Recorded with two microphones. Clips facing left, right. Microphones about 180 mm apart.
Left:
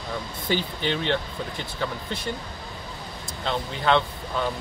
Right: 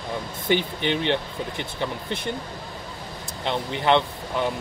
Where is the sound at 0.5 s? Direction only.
20° right (ahead or behind).